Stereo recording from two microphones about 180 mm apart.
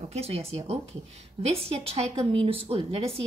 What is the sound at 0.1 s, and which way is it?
Speech, 35° right (ahead or behind).